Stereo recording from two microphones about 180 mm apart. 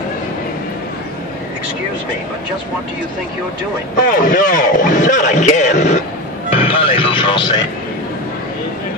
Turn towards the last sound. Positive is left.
turn(degrees=25)  # may be behind; listen again after turning